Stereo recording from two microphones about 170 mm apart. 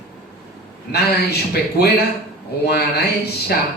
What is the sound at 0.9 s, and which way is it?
Speech, 70° left (ahead or behind).